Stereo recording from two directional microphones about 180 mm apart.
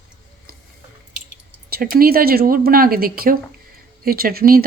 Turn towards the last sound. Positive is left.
turn(degrees=-55)  # may be behind; listen again after turning